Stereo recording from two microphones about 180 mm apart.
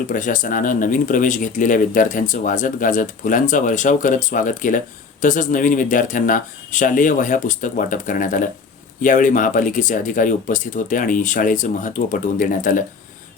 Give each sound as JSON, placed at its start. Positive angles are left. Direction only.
{"t": 0.1, "sound": "speech", "side_deg": 45}